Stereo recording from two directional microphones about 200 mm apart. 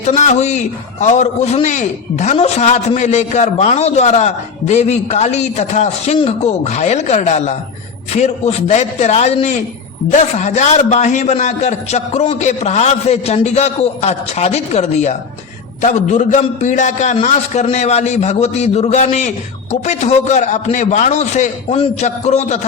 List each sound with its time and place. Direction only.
0.0 s a man's voice: 35° left (ahead or behind)